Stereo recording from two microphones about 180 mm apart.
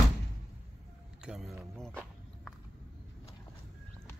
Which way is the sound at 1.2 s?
Centre (ahead or behind).